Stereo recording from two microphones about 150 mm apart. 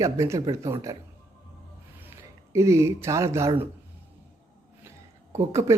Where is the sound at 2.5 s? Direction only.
20° right (ahead or behind).